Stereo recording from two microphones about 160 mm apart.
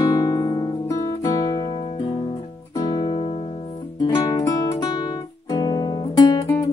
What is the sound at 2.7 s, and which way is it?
Music, 30° left (ahead or behind).